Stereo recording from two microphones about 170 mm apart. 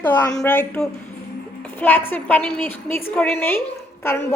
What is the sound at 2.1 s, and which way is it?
A woman's voice, 10° left (ahead or behind).